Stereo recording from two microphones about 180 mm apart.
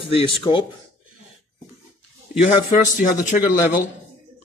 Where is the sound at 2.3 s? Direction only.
45° left (ahead or behind).